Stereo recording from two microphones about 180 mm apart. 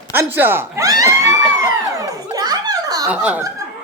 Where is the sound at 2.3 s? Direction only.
20° right (ahead or behind).